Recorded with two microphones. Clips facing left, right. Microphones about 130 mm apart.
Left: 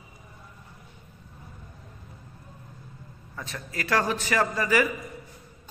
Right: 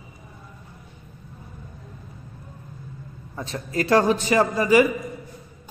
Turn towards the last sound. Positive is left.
turn(degrees=-20)  # may be behind; listen again after turning